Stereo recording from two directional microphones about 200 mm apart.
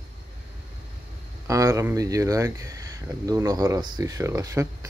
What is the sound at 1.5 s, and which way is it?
Speech, 15° right (ahead or behind).